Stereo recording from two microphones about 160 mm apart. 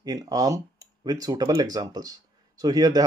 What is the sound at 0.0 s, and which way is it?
Speech, 25° right (ahead or behind).